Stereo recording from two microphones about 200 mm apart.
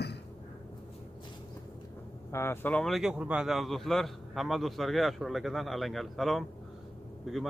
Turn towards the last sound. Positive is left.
turn(degrees=0)  # may be behind; listen again after turning